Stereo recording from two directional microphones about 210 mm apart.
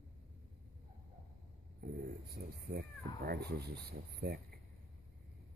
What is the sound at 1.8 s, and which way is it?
Speech, 45° right (ahead or behind).